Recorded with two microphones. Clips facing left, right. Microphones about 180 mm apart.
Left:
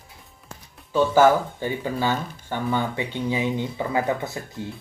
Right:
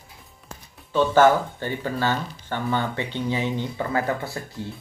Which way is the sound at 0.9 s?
10° left (ahead or behind).